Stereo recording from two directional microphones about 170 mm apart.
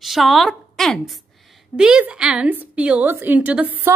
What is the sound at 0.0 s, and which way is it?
A woman's voice, centre (ahead or behind).